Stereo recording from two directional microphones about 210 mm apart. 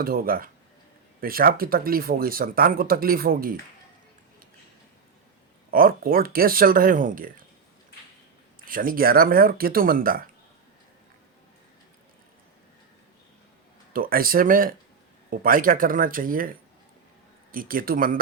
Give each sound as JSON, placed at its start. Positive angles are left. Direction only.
{"t": 0.0, "sound": "speech", "side_deg": -45}
{"t": 5.7, "sound": "speech", "side_deg": -45}
{"t": 8.6, "sound": "speech", "side_deg": -40}
{"t": 13.9, "sound": "speech", "side_deg": -45}